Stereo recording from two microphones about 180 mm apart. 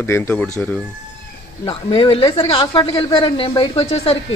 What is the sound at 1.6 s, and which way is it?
Speech, 30° left (ahead or behind).